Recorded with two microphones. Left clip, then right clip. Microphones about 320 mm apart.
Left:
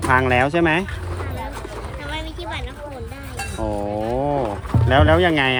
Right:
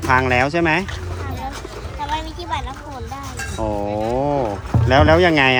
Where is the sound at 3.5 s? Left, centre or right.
Centre.